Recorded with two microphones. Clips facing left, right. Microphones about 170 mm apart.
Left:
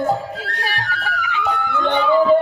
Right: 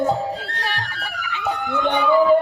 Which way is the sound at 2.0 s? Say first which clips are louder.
Left 1 dB; 5° right (ahead or behind).